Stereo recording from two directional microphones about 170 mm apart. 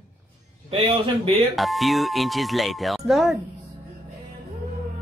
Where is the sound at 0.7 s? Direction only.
35° right (ahead or behind).